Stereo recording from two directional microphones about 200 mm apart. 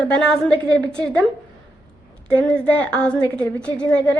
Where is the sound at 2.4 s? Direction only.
5° left (ahead or behind).